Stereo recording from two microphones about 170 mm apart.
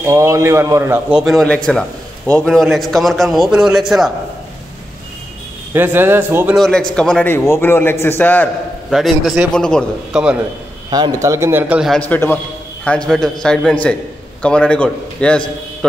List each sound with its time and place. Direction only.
0.0 s a man's voice: 15° right (ahead or behind)
1.1 s a man's voice: centre (ahead or behind)
5.7 s a man's voice: 15° right (ahead or behind)
6.6 s a man's voice: 5° left (ahead or behind)
8.9 s a man's voice: centre (ahead or behind)
10.9 s a man's voice: 20° right (ahead or behind); by 12.0 s 5° right (ahead or behind)
12.1 s a man's voice: 10° left (ahead or behind)